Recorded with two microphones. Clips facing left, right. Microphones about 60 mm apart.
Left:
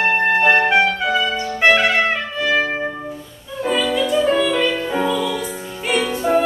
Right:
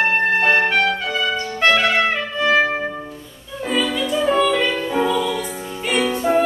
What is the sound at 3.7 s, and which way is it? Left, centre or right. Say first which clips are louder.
Music: left 2 dB; centre.